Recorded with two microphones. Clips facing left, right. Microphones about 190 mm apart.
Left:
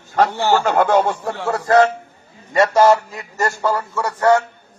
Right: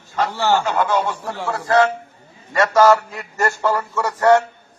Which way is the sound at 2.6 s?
20° left (ahead or behind).